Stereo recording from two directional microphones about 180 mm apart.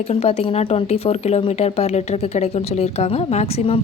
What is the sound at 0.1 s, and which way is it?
Speech, 35° left (ahead or behind).